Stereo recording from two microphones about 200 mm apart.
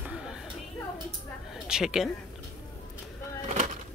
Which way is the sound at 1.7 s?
5° right (ahead or behind).